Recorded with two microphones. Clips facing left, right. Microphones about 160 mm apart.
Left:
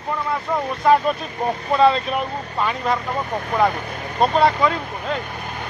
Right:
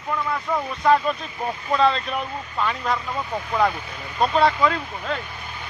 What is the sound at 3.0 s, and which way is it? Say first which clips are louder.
Speech: left 3 dB; 50° left (ahead or behind).